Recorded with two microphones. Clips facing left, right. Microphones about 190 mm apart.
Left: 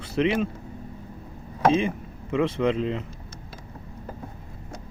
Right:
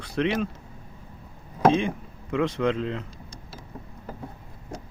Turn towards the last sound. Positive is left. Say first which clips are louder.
# left 2 dB
turn(degrees=0)  # may be behind; listen again after turning